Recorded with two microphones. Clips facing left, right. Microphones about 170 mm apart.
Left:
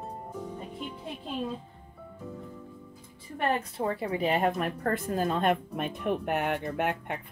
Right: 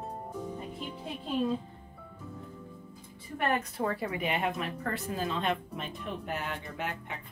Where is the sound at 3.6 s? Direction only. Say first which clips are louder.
Left 1 dB; 25° left (ahead or behind); by 7.2 s 60° left (ahead or behind).